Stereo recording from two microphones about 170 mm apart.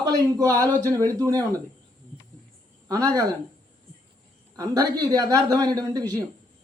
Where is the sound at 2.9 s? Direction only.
20° right (ahead or behind).